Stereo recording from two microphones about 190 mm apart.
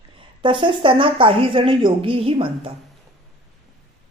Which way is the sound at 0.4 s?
25° right (ahead or behind).